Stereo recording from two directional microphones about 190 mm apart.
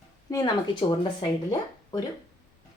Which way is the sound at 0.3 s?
20° left (ahead or behind).